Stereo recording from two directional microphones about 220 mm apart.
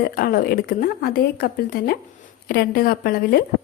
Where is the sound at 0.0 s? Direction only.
40° left (ahead or behind).